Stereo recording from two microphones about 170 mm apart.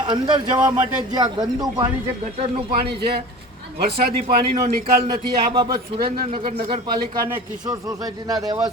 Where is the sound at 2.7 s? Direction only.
65° right (ahead or behind).